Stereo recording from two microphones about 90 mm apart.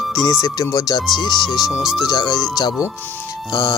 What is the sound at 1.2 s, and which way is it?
Speech, 55° left (ahead or behind).